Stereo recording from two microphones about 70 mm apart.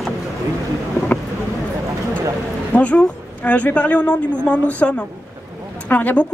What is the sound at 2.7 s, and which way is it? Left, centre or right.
A man's voice, left.